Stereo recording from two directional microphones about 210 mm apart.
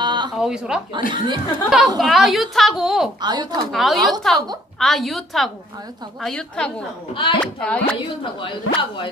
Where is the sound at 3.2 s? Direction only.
20° right (ahead or behind).